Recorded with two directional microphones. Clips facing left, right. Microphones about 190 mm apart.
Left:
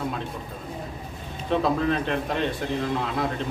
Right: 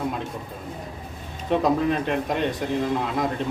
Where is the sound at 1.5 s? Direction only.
15° right (ahead or behind).